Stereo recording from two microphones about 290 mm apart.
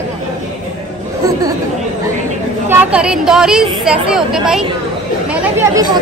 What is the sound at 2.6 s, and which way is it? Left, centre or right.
Speech, centre.